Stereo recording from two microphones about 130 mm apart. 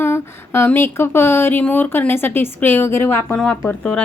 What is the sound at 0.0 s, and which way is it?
A woman's voice, 20° left (ahead or behind).